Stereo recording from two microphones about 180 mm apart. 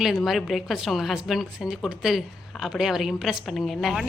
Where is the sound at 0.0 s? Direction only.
Centre (ahead or behind).